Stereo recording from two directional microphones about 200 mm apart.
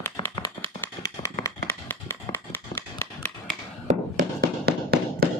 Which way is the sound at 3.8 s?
40° right (ahead or behind).